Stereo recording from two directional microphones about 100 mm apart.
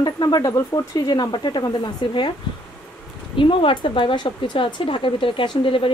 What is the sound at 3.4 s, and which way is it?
Speech, 60° left (ahead or behind).